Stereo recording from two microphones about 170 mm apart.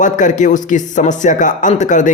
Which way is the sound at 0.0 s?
50° left (ahead or behind).